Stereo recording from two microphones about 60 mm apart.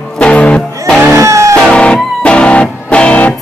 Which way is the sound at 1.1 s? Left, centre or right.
Right.